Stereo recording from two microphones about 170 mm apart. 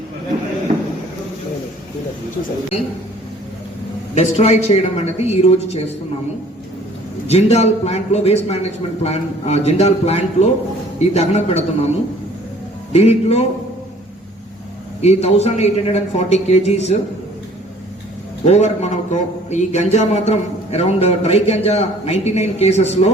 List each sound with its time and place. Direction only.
0.7 s a sound: 45° right (ahead or behind)
4.1 s a man's voice: 40° left (ahead or behind)
7.3 s a man's voice: 40° left (ahead or behind)
12.9 s a man's voice: 40° left (ahead or behind)
15.0 s a man's voice: 40° left (ahead or behind)
18.4 s a man's voice: 40° left (ahead or behind)